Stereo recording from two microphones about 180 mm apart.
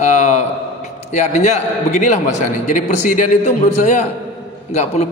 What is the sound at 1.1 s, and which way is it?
A man's voice, 40° left (ahead or behind).